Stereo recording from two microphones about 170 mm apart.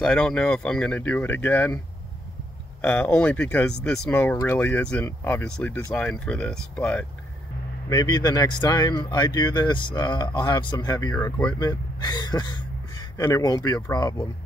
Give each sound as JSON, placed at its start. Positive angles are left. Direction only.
{"t": 0.0, "sound": "speech", "side_deg": 5}
{"t": 2.8, "sound": "speech", "side_deg": 10}
{"t": 7.9, "sound": "speech", "side_deg": 25}